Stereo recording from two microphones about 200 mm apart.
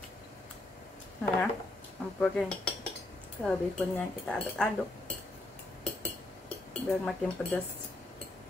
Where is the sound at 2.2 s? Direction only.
5° left (ahead or behind).